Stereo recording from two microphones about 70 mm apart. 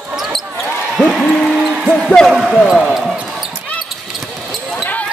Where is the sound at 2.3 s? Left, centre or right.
Centre.